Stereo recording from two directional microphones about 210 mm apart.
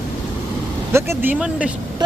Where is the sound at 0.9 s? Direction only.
10° right (ahead or behind).